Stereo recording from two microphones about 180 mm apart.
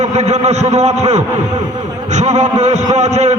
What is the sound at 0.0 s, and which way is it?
A man's voice, 40° right (ahead or behind).